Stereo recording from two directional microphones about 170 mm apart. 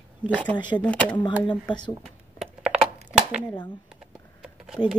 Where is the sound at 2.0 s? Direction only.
Centre (ahead or behind).